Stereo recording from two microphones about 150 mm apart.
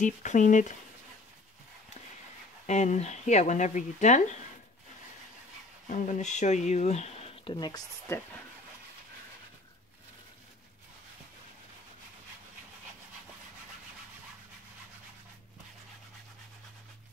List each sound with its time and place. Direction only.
0.0 s speech: 55° left (ahead or behind)
2.6 s speech: 50° left (ahead or behind)
5.9 s speech: 55° left (ahead or behind); by 7.8 s 30° left (ahead or behind)
8.1 s speech: 20° left (ahead or behind)